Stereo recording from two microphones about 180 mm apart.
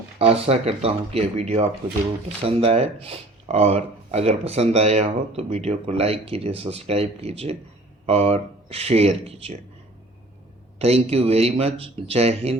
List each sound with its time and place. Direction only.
0.2 s speech: 30° right (ahead or behind)
10.8 s speech: 35° right (ahead or behind)